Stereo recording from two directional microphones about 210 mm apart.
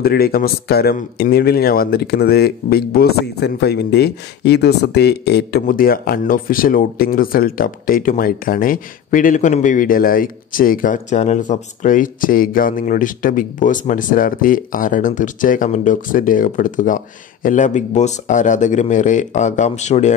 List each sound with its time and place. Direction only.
0.0 s speech: 45° left (ahead or behind)